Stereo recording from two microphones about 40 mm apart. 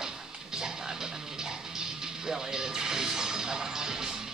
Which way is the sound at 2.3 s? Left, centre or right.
Centre.